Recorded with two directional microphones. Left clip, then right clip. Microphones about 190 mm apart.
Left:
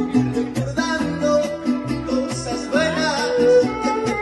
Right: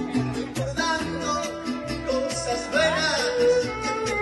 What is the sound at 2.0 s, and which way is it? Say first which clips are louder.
Music: right 1 dB; centre (ahead or behind).